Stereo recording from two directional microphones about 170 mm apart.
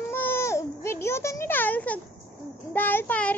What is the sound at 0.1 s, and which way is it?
Baby cry, 15° left (ahead or behind).